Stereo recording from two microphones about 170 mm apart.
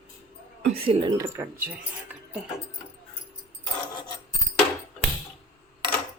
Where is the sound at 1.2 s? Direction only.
15° right (ahead or behind).